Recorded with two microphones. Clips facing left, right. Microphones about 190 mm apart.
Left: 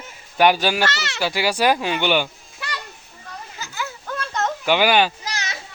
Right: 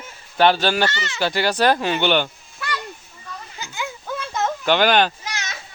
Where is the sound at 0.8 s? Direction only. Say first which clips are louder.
Even; 80° left.